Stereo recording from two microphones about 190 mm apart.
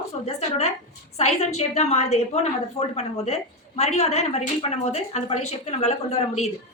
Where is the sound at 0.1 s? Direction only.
35° left (ahead or behind).